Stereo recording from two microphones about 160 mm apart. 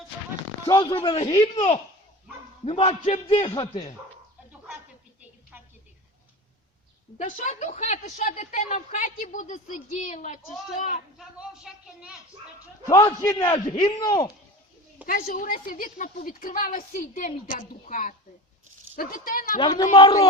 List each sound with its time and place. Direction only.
0.6 s a man's voice: 30° left (ahead or behind)
2.6 s a man's voice: 35° left (ahead or behind)
7.2 s a woman's voice: 50° left (ahead or behind)
11.2 s speech: 5° right (ahead or behind)
13.2 s a man's voice: 25° left (ahead or behind)
15.0 s a woman's voice: 65° left (ahead or behind)
18.9 s a woman's voice: 60° left (ahead or behind)
19.5 s a man's voice: 30° left (ahead or behind)